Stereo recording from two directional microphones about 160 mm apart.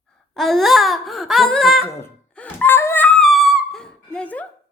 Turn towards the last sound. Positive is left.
turn(degrees=10)  # may be behind; listen again after turning